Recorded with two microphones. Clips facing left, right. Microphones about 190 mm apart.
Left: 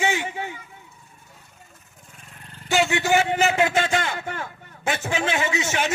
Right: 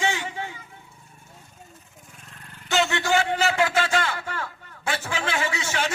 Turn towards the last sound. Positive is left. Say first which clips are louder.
# left 3 dB
turn(degrees=20)  # may be behind; listen again after turning